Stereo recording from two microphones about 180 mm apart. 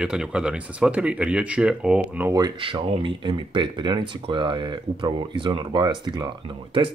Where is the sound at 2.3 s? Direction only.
25° right (ahead or behind).